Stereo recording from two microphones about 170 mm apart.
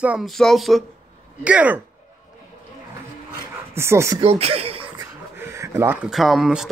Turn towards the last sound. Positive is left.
turn(degrees=0)  # may be behind; listen again after turning